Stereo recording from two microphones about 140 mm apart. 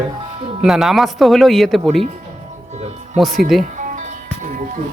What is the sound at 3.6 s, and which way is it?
Music, 60° right (ahead or behind).